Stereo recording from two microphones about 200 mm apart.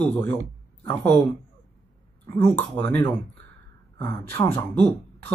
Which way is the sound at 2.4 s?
10° left (ahead or behind).